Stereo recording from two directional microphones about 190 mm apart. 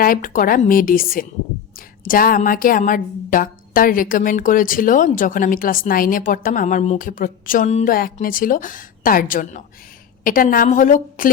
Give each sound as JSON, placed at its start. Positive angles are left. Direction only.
{"t": 0.0, "sound": "speech", "side_deg": 45}